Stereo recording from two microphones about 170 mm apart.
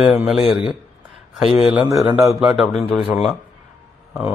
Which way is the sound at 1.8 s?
20° right (ahead or behind).